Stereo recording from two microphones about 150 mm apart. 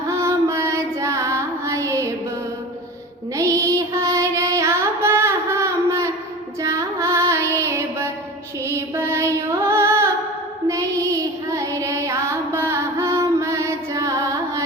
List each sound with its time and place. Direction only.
0.1 s music: 20° right (ahead or behind)
3.3 s child singing: 20° right (ahead or behind)
6.6 s female singing: 20° right (ahead or behind)
10.7 s child singing: 20° right (ahead or behind)